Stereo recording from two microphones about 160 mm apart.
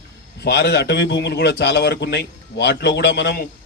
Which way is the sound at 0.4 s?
90° left.